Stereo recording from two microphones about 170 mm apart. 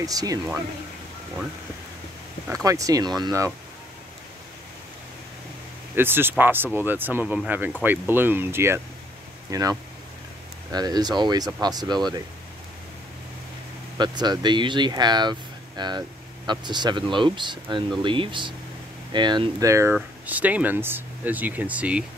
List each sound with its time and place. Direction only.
0.0 s speech: 20° right (ahead or behind)
2.4 s speech: 20° right (ahead or behind)
5.9 s speech: 15° right (ahead or behind)
13.9 s speech: 25° right (ahead or behind); by 22.0 s 10° right (ahead or behind)